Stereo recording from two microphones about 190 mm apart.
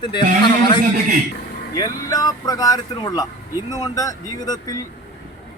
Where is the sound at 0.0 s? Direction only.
25° left (ahead or behind).